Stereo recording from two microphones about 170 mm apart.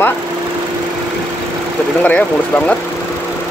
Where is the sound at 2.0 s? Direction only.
5° left (ahead or behind).